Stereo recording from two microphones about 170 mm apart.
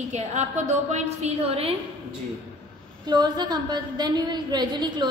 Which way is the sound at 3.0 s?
25° right (ahead or behind).